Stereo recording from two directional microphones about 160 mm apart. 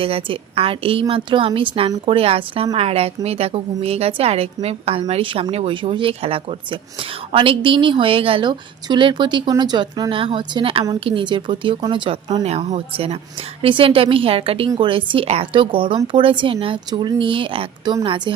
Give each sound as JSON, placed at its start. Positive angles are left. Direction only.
{"t": 0.0, "sound": "a woman's voice", "side_deg": -35}